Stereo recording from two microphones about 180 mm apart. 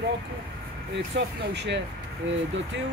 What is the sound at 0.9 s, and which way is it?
Speech, 75° right (ahead or behind).